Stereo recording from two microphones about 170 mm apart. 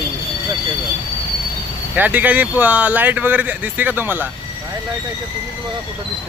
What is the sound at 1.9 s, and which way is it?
Speech, 10° right (ahead or behind).